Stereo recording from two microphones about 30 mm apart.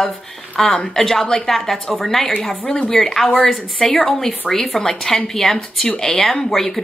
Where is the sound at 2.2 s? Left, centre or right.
Centre.